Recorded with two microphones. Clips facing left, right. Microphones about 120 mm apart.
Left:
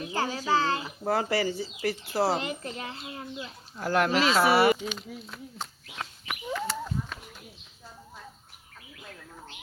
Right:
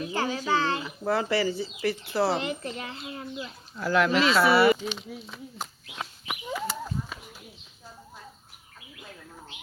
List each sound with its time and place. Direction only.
0.0 s speech: 30° left (ahead or behind)
2.4 s a woman's voice: 35° right (ahead or behind)
2.6 s speech: 30° left (ahead or behind)
3.8 s speech: 50° left (ahead or behind)
4.9 s bird: centre (ahead or behind)
8.8 s bird: 5° right (ahead or behind)